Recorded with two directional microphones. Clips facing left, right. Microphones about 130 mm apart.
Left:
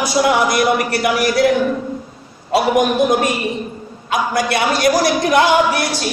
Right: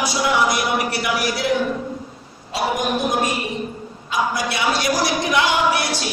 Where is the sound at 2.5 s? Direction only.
65° left (ahead or behind); by 5.8 s 50° left (ahead or behind).